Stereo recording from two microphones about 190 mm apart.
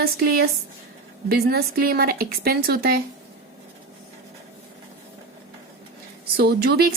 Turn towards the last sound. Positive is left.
turn(degrees=-55)  # may be behind; listen again after turning